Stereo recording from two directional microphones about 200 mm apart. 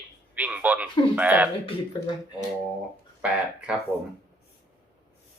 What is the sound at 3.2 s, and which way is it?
Speech, 5° right (ahead or behind).